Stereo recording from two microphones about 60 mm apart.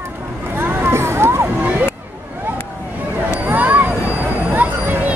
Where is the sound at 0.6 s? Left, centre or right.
Right.